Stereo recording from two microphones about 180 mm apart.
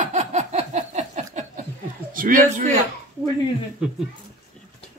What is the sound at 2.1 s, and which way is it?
Speech, 50° right (ahead or behind).